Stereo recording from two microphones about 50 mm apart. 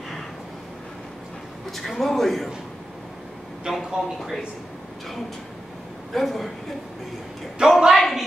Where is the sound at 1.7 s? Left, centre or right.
Centre.